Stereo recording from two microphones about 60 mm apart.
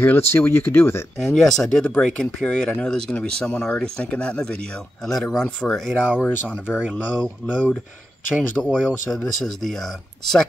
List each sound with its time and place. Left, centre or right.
0.0 s speech: left
1.1 s speech: centre
6.9 s speech: centre
8.8 s speech: centre